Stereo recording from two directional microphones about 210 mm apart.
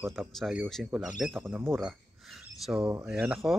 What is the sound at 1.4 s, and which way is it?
Speech, 10° right (ahead or behind).